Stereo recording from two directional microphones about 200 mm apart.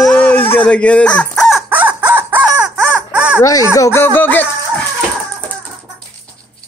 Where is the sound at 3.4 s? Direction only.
15° left (ahead or behind).